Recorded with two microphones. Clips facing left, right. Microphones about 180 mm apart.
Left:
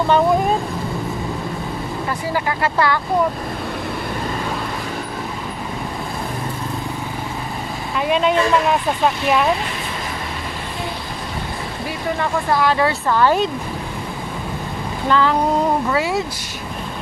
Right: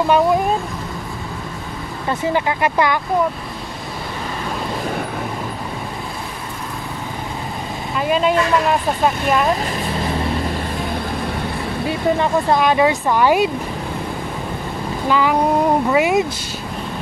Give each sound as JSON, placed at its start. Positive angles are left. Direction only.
{"t": 2.0, "sound": "speech", "side_deg": -20}
{"t": 8.0, "sound": "speech", "side_deg": 0}
{"t": 12.2, "sound": "speech", "side_deg": -20}
{"t": 15.0, "sound": "speech", "side_deg": -10}